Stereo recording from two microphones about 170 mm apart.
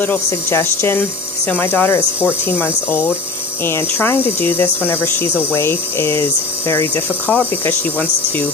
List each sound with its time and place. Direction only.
0.0 s speech: 15° left (ahead or behind)